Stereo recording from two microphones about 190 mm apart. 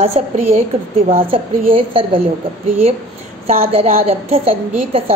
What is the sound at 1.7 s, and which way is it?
Speech, 30° right (ahead or behind).